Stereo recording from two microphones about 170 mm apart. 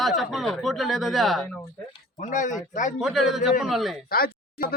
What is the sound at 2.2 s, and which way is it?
Speech, 45° left (ahead or behind).